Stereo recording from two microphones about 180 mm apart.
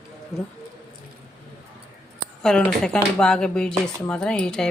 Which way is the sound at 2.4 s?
5° left (ahead or behind).